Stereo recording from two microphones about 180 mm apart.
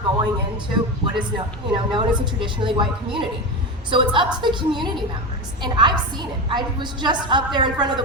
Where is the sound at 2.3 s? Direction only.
25° right (ahead or behind).